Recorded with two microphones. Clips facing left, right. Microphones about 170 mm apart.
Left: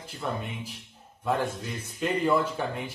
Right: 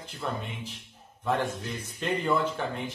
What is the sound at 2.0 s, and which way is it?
Speech, 5° left (ahead or behind).